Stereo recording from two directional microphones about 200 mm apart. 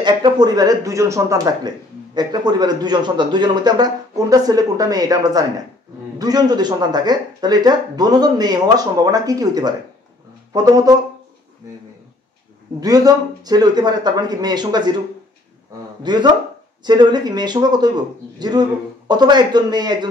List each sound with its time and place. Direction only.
0.0 s speech: 20° right (ahead or behind)
12.8 s speech: 20° right (ahead or behind)
16.0 s speech: 20° right (ahead or behind)